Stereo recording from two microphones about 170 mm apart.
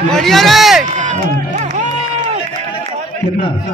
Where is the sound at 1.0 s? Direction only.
50° right (ahead or behind).